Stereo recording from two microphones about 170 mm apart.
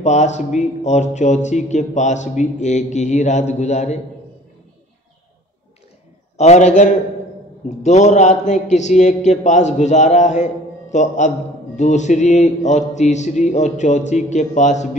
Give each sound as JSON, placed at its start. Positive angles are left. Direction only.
{"t": 0.0, "sound": "a man's voice", "side_deg": 45}
{"t": 6.3, "sound": "a man's voice", "side_deg": 40}